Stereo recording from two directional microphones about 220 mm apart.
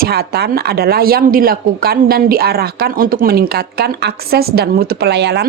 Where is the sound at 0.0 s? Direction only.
45° right (ahead or behind).